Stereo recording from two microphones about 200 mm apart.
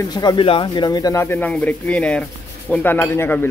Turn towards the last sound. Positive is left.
turn(degrees=10)  # may be behind; listen again after turning